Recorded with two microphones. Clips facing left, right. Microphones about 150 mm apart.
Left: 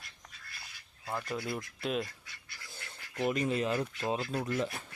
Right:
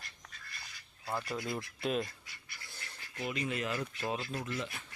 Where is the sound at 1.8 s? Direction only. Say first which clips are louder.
Right 1 dB; centre (ahead or behind).